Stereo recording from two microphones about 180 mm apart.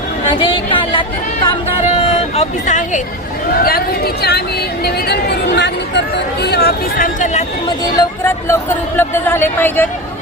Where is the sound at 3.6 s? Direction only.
55° left (ahead or behind).